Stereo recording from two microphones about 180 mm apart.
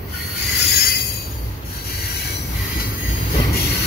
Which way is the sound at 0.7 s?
60° left (ahead or behind).